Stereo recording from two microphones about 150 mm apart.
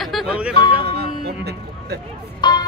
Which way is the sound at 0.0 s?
Centre (ahead or behind).